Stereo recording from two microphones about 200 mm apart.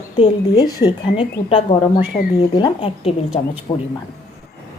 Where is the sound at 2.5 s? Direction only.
25° left (ahead or behind).